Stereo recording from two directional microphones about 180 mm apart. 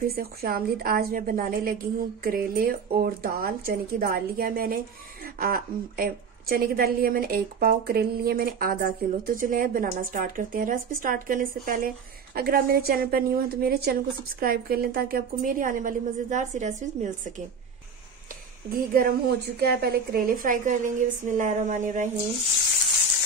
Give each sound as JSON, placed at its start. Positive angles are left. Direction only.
{"t": 0.1, "sound": "a woman's voice", "side_deg": -60}
{"t": 18.7, "sound": "a woman's voice", "side_deg": -55}